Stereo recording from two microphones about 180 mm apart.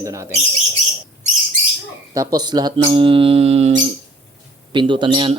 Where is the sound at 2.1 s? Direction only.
20° right (ahead or behind); by 3.8 s 35° right (ahead or behind).